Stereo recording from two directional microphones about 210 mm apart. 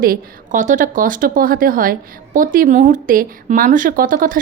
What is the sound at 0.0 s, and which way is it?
A woman's voice, 40° right (ahead or behind).